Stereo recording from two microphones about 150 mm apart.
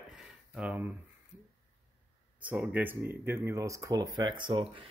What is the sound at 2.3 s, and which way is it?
A man's voice, 10° right (ahead or behind).